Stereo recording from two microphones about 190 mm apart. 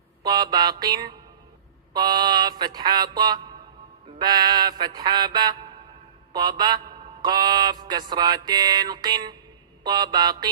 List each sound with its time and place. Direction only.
0.3 s mantra: 20° right (ahead or behind)